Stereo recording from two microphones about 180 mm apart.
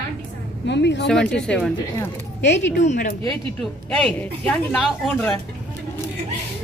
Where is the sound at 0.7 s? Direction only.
75° left (ahead or behind).